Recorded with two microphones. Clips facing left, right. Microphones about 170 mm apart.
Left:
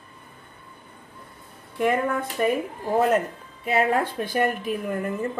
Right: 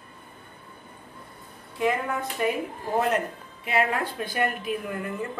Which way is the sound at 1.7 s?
50° left (ahead or behind).